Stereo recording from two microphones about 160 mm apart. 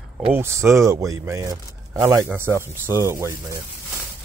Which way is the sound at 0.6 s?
20° right (ahead or behind).